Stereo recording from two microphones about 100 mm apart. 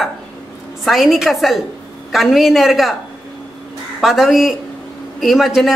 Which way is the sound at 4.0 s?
Centre (ahead or behind).